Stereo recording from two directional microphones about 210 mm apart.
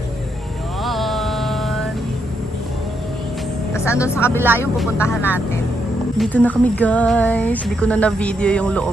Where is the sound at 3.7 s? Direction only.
15° left (ahead or behind).